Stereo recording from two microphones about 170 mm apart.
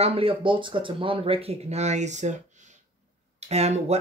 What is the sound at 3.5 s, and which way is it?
Speech, 40° right (ahead or behind).